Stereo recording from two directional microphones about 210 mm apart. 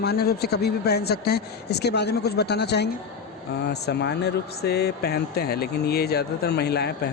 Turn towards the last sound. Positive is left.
turn(degrees=50)  # may be behind; listen again after turning